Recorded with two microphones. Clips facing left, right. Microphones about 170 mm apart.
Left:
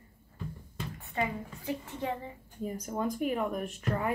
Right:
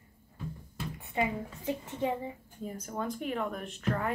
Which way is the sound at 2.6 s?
10° left (ahead or behind).